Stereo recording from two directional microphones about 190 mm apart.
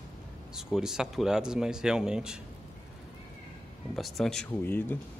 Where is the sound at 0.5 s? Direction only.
5° right (ahead or behind).